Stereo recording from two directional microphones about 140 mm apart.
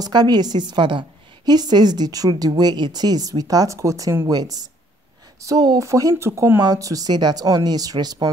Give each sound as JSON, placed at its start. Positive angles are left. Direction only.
{"t": 0.0, "sound": "a woman's voice", "side_deg": -30}